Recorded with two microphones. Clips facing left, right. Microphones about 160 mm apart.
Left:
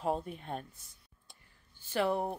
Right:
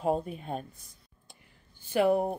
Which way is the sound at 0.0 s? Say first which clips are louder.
Right 5 dB; 15° right (ahead or behind).